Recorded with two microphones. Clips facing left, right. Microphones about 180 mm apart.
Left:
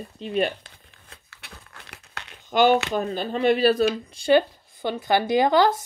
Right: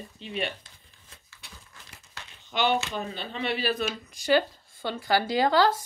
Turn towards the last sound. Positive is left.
turn(degrees=20)  # may be behind; listen again after turning